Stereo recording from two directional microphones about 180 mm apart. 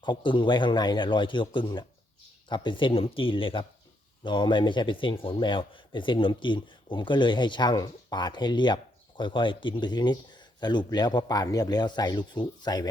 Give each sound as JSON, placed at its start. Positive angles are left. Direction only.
{"t": 0.0, "sound": "speech", "side_deg": 25}